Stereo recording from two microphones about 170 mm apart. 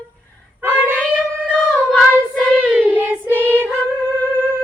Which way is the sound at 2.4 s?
5° right (ahead or behind).